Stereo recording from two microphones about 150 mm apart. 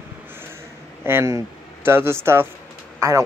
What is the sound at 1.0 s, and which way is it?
Speech, 20° right (ahead or behind).